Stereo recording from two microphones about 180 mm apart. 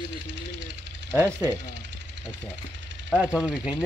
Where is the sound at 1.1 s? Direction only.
15° right (ahead or behind).